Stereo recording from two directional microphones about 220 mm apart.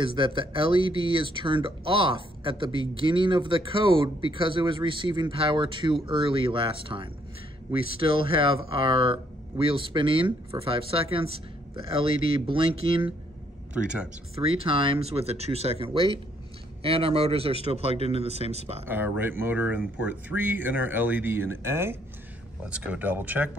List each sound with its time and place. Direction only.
0.0 s speech: 25° right (ahead or behind)
14.3 s speech: 25° right (ahead or behind)
18.9 s speech: 10° right (ahead or behind)